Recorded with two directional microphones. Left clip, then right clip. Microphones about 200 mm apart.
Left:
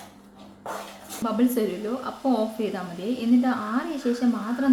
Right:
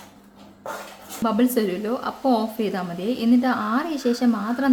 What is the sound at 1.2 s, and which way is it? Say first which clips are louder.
A woman's voice: right 3 dB; 30° right (ahead or behind).